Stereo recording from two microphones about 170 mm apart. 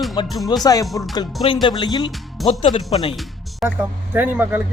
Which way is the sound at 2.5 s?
35° left (ahead or behind).